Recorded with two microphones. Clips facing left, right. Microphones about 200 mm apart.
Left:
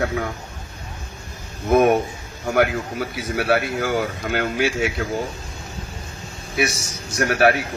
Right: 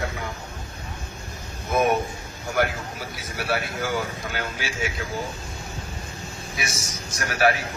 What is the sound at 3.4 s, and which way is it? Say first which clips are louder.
Speech: left 6 dB; 55° left (ahead or behind).